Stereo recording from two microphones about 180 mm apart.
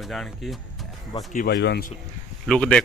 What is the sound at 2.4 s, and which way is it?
Speech, 5° left (ahead or behind).